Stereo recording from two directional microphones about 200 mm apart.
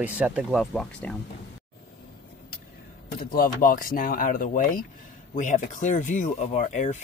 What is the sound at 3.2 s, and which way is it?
Speech, 45° left (ahead or behind).